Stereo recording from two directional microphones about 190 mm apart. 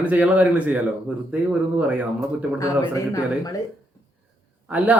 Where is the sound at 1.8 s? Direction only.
5° right (ahead or behind).